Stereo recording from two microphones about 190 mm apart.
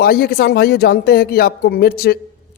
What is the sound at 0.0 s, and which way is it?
A man's voice, 55° left (ahead or behind).